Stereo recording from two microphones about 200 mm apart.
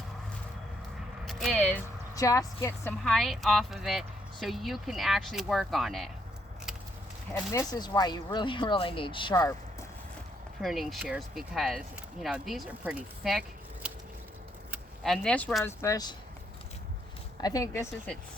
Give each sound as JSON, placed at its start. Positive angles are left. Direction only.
{"t": 1.2, "sound": "speech", "side_deg": 0}
{"t": 7.3, "sound": "speech", "side_deg": 15}
{"t": 9.3, "sound": "a woman's voice", "side_deg": 15}
{"t": 10.6, "sound": "speech", "side_deg": 0}
{"t": 13.8, "sound": "a sound", "side_deg": -5}
{"t": 14.7, "sound": "speech", "side_deg": 0}
{"t": 17.4, "sound": "a woman's voice", "side_deg": 15}